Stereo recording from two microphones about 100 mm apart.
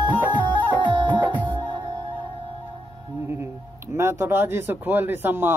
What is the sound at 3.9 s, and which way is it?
Speech, 25° right (ahead or behind).